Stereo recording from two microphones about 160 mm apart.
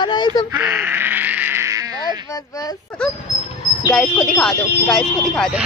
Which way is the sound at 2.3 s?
25° left (ahead or behind).